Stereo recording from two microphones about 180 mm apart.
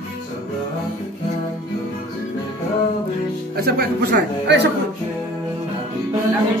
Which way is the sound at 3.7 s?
65° right (ahead or behind).